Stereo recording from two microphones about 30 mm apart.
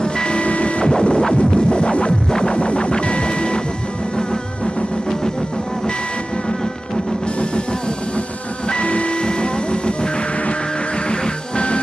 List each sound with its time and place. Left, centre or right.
0.0 s vehicle: left
0.8 s cacophony: left
1.7 s music: left
8.6 s music: left
11.1 s music: left